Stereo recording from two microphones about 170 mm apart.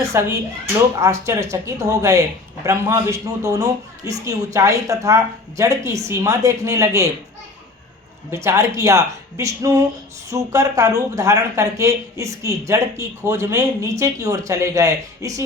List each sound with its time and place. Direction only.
0.0 s a woman's voice: 15° right (ahead or behind)
8.4 s speech: 20° right (ahead or behind)